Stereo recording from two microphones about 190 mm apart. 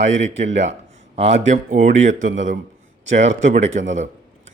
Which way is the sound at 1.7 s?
40° right (ahead or behind).